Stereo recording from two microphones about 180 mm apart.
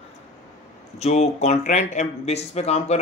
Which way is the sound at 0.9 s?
35° left (ahead or behind).